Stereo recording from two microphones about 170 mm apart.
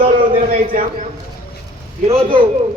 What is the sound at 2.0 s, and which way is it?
Speech, 30° right (ahead or behind).